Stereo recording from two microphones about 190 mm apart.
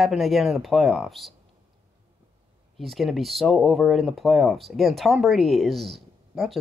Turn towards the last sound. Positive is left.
turn(degrees=0)  # may be behind; listen again after turning